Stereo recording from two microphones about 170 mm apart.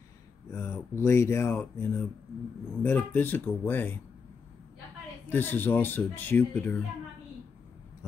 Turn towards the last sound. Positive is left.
turn(degrees=10)  # may be behind; listen again after turning